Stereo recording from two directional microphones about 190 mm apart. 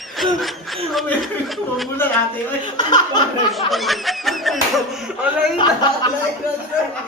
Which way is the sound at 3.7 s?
Centre (ahead or behind).